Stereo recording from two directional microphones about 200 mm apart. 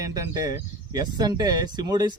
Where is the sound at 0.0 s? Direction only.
20° right (ahead or behind).